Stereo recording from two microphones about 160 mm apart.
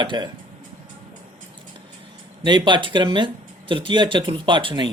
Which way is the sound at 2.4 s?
30° right (ahead or behind).